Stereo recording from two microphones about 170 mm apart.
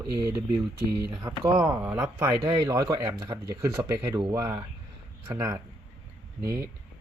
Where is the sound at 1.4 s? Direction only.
20° right (ahead or behind).